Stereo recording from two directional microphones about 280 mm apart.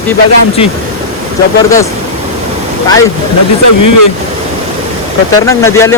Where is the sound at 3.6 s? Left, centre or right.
Left.